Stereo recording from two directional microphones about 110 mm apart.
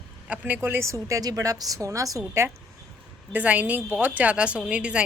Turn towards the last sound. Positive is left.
turn(degrees=-10)  # may be behind; listen again after turning